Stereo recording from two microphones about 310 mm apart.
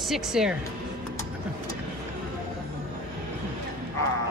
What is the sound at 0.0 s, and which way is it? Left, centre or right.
Speech, centre.